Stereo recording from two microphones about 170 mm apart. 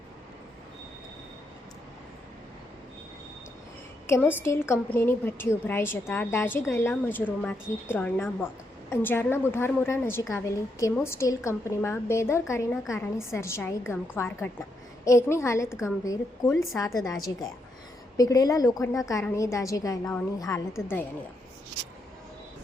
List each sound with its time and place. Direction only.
4.0 s a woman's voice: 15° left (ahead or behind)
18.2 s a woman's voice: 20° left (ahead or behind)